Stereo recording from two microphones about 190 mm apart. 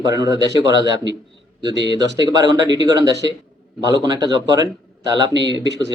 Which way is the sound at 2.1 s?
20° right (ahead or behind).